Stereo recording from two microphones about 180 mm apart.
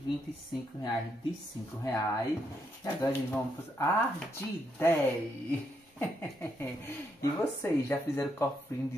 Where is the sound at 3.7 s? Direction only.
15° left (ahead or behind).